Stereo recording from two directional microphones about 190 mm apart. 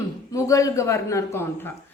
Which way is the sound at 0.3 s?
15° left (ahead or behind).